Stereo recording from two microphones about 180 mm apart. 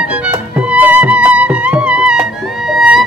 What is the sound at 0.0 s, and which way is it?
Music, 5° right (ahead or behind).